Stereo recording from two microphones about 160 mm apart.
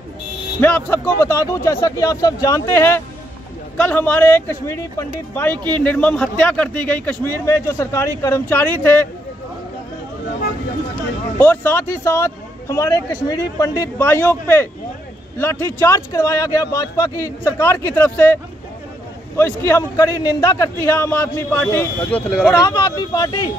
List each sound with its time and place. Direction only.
0.6 s speech: 15° left (ahead or behind)
11.3 s speech: 10° left (ahead or behind)
22.5 s speech: 20° left (ahead or behind)